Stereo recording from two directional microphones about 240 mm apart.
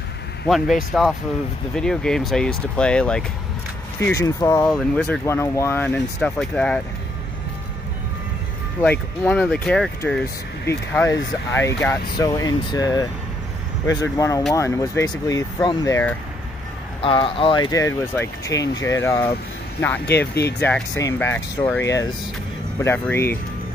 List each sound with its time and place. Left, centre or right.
0.5 s speech: centre
9.2 s speech: centre
17.0 s speech: left
20.1 s speech: left
20.6 s speech: centre